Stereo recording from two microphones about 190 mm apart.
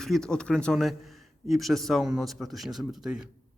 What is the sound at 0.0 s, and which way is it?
Speech, 5° left (ahead or behind).